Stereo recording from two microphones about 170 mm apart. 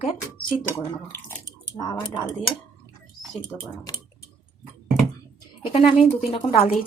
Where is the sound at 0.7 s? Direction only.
15° left (ahead or behind).